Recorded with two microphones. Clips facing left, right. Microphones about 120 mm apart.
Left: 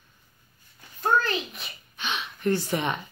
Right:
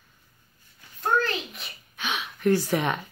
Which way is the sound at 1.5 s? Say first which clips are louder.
Left 1 dB; 5° right (ahead or behind).